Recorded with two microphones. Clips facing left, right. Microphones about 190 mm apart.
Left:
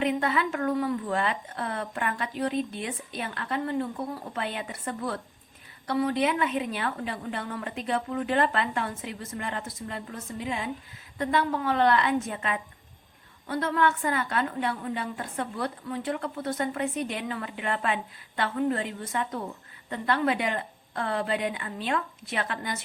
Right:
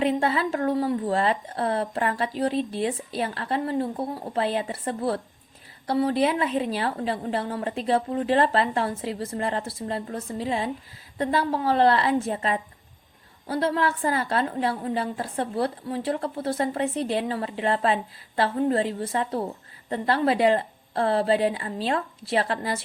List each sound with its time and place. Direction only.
0.0 s a woman's voice: 30° right (ahead or behind)